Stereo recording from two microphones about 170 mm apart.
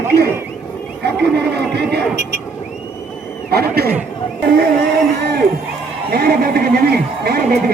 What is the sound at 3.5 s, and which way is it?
Speech, 70° right (ahead or behind).